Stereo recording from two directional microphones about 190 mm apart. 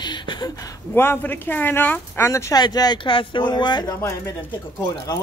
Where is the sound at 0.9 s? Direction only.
10° left (ahead or behind).